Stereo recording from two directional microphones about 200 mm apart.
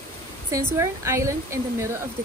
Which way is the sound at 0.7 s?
15° right (ahead or behind).